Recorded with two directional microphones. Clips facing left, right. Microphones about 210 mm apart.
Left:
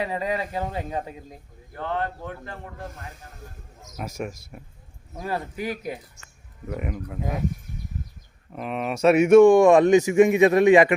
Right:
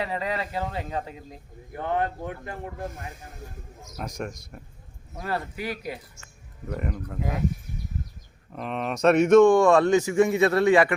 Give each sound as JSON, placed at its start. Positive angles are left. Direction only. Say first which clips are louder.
{"t": 0.0, "sound": "speech", "louder": "left 2 dB", "side_deg": 15}
{"t": 1.7, "sound": "speech", "louder": "right 2 dB", "side_deg": -15}
{"t": 3.9, "sound": "speech", "louder": "left 2 dB", "side_deg": 5}
{"t": 6.7, "sound": "speech", "louder": "left 1 dB", "side_deg": 5}
{"t": 8.5, "sound": "speech", "louder": "left 1 dB", "side_deg": 5}